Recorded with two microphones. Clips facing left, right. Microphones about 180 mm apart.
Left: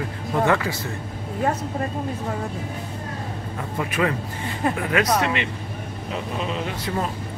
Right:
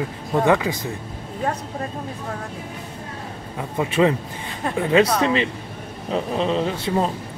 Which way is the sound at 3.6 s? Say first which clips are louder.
Right 5 dB; 25° right (ahead or behind).